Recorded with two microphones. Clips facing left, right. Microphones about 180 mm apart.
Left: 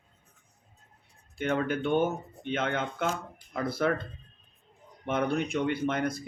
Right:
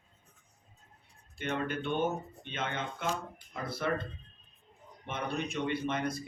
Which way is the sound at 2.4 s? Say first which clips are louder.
Left 8 dB; 80° left.